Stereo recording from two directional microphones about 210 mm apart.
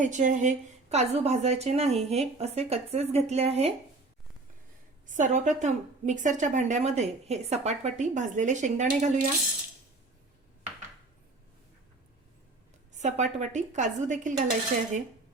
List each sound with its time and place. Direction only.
0.0 s a woman's voice: 35° right (ahead or behind)
5.0 s a woman's voice: 35° right (ahead or behind)
12.9 s a woman's voice: 35° right (ahead or behind)